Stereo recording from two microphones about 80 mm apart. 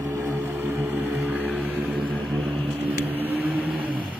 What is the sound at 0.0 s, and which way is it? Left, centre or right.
Vehicle, right.